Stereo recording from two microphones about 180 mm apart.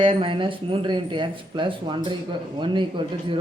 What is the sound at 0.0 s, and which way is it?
Speech, 30° right (ahead or behind).